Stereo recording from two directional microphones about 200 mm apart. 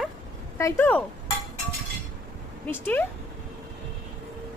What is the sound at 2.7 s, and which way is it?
Speech, 10° left (ahead or behind).